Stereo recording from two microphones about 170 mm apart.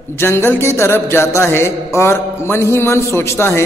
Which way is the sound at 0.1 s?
15° left (ahead or behind).